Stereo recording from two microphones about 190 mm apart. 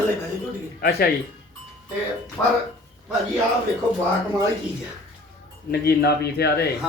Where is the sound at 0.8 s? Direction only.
55° left (ahead or behind).